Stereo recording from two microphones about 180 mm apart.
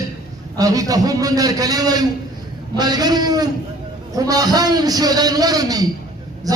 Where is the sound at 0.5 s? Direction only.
20° right (ahead or behind).